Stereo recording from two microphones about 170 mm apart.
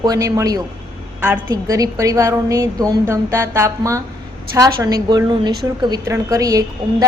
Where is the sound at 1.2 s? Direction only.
10° right (ahead or behind).